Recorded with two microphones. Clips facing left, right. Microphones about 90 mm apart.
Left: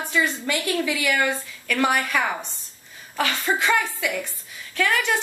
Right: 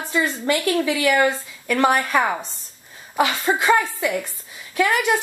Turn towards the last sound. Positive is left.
turn(degrees=-15)  # may be behind; listen again after turning